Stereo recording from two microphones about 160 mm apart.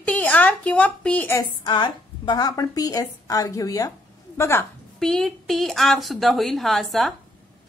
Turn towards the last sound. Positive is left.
turn(degrees=0)  # may be behind; listen again after turning